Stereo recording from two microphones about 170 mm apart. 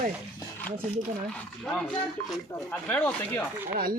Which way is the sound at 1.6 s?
Centre (ahead or behind).